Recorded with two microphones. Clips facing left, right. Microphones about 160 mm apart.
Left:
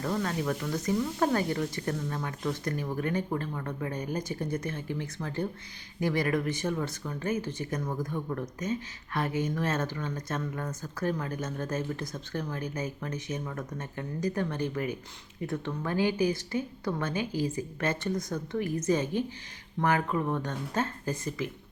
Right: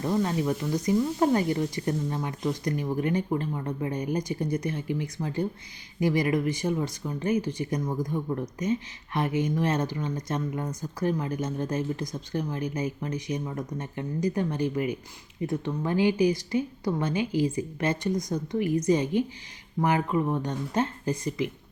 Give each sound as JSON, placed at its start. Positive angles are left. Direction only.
{"t": 0.0, "sound": "speech", "side_deg": -20}